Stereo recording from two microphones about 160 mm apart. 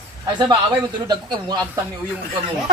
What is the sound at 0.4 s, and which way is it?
Speech, 25° right (ahead or behind).